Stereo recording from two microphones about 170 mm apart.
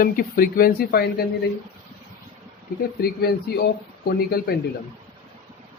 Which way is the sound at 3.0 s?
70° left (ahead or behind).